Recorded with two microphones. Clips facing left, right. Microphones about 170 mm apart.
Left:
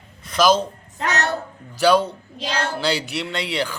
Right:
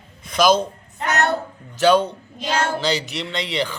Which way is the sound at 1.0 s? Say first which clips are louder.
Right 2 dB; 55° right (ahead or behind).